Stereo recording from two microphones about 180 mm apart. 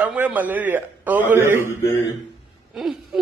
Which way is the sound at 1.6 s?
15° left (ahead or behind).